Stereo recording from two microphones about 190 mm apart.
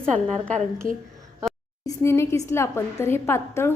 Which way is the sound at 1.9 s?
15° left (ahead or behind).